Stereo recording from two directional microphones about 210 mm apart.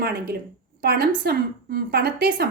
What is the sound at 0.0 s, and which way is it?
A woman's voice, 45° right (ahead or behind).